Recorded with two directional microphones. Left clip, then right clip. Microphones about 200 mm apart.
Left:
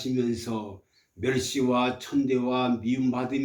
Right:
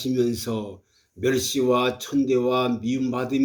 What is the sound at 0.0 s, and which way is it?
Speech, 55° right (ahead or behind).